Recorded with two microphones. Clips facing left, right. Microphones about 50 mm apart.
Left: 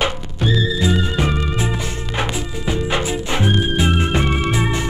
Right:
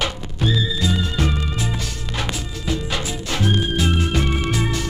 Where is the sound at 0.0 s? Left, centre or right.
Left.